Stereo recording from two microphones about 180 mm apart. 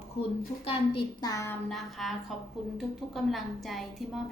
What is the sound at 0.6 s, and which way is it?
Speech, 30° left (ahead or behind).